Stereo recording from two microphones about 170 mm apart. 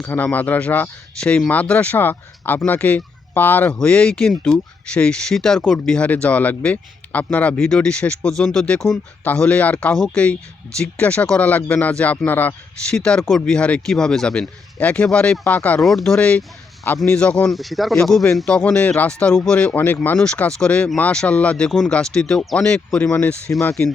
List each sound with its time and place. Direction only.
0.0 s speech: 10° left (ahead or behind)
23.5 s speech: 15° left (ahead or behind)